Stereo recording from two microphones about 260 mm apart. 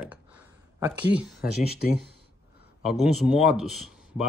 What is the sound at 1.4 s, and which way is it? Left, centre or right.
Speech, left.